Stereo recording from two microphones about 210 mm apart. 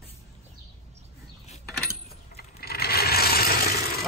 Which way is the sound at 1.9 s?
50° left (ahead or behind).